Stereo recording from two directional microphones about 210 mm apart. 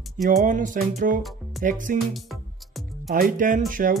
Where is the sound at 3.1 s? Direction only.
40° right (ahead or behind).